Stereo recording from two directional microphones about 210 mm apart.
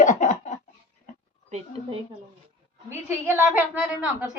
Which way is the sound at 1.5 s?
30° right (ahead or behind).